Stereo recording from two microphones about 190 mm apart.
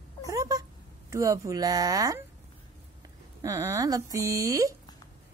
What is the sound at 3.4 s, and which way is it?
Speech, 15° right (ahead or behind).